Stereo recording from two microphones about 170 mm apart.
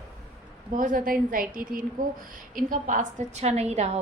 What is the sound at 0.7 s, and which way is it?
A woman's voice, 50° right (ahead or behind).